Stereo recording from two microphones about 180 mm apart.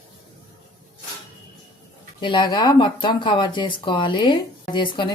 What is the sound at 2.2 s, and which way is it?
Speech, 25° left (ahead or behind).